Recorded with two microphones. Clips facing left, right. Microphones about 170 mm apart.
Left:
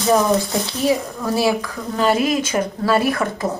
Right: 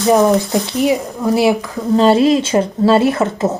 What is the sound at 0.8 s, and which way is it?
Speech, 20° right (ahead or behind).